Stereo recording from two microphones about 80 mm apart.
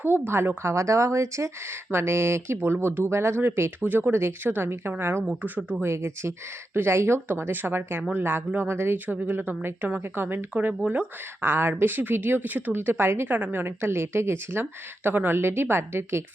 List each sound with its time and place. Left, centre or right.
0.0 s speech: right
5.2 s speech: centre
5.8 s speech: right